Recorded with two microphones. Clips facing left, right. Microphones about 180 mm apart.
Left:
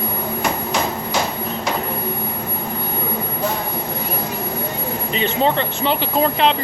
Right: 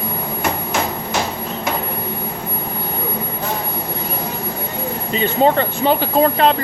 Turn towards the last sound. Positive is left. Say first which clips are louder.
# right 3 dB
turn(degrees=-45)  # may be behind; listen again after turning